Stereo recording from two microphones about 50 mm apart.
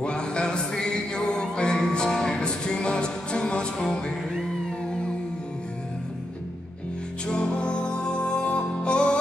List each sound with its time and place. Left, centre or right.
0.0 s music: centre
7.2 s music: centre